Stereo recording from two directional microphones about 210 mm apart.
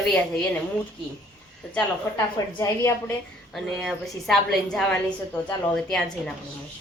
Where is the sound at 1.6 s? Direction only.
5° left (ahead or behind).